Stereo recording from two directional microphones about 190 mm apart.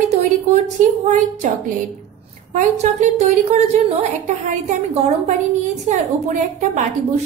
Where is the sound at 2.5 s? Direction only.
40° right (ahead or behind).